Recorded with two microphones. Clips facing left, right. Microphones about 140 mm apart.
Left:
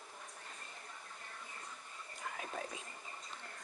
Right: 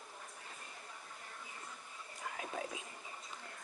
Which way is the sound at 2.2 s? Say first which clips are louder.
Right 1 dB; centre (ahead or behind).